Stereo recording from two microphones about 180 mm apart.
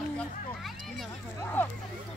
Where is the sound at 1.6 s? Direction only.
10° left (ahead or behind).